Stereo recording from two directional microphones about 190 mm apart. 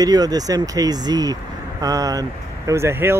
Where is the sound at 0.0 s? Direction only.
20° right (ahead or behind).